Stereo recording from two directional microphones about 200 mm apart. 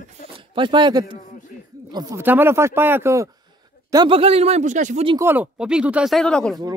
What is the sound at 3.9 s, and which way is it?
A man's voice, 25° right (ahead or behind).